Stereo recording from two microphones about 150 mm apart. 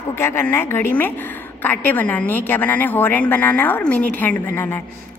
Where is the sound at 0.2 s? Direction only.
15° left (ahead or behind).